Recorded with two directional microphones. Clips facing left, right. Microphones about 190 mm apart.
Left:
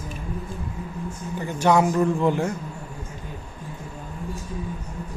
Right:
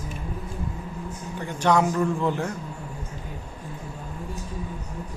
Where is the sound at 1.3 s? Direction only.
5° left (ahead or behind).